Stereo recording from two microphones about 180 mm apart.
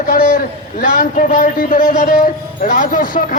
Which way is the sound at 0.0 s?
45° left (ahead or behind).